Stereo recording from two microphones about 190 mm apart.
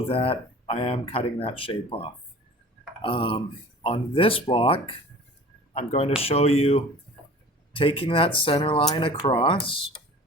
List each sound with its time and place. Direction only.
0.1 s speech: 30° left (ahead or behind)